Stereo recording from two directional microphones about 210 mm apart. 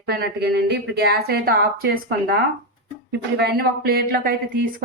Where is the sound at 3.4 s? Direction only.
45° right (ahead or behind).